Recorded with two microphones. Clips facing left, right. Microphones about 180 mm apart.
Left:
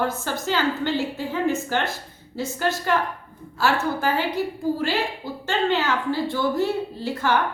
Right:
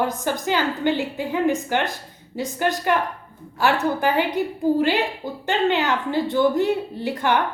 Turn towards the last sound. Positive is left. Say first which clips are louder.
# right 1 dB
turn(degrees=-15)  # may be behind; listen again after turning